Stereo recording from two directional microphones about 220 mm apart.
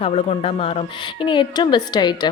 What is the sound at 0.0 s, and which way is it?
A woman's voice, 30° left (ahead or behind).